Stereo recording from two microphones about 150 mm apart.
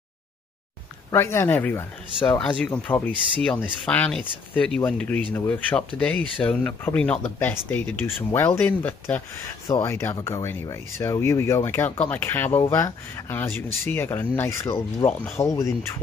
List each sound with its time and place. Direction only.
1.1 s speech: 15° left (ahead or behind)